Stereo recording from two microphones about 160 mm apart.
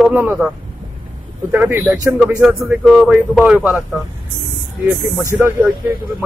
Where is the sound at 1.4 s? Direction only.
10° right (ahead or behind).